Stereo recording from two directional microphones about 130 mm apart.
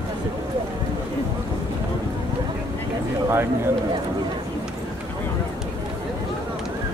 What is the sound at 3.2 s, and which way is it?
Speech, 15° right (ahead or behind).